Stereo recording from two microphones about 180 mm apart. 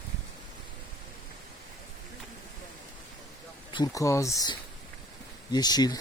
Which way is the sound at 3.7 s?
20° left (ahead or behind).